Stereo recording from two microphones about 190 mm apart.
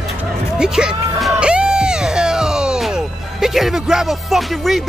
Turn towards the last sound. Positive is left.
turn(degrees=0)  # may be behind; listen again after turning